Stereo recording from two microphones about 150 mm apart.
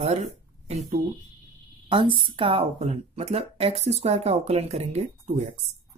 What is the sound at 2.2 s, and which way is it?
Speech, 35° right (ahead or behind).